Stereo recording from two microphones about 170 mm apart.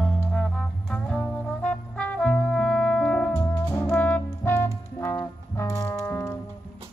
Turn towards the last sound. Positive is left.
turn(degrees=10)  # may be behind; listen again after turning